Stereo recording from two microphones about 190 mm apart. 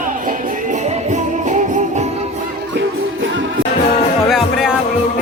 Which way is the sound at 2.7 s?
90° right.